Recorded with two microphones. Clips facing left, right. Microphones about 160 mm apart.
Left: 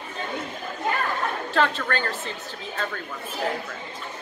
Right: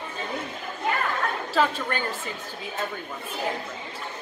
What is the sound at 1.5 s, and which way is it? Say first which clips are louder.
Speech: left 1 dB; 10° right (ahead or behind).